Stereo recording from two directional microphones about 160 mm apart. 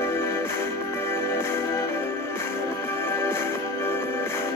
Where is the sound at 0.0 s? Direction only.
15° left (ahead or behind).